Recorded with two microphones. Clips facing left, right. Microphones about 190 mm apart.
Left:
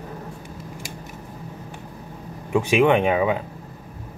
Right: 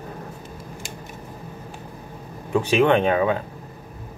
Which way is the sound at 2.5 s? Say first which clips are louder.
Even; 10° left (ahead or behind).